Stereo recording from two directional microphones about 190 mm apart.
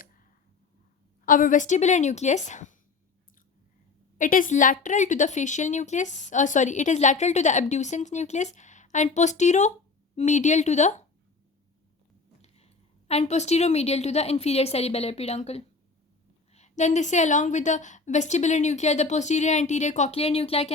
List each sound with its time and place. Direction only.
1.2 s speech: 45° left (ahead or behind)
4.2 s speech: 45° left (ahead or behind)
13.1 s speech: 35° left (ahead or behind)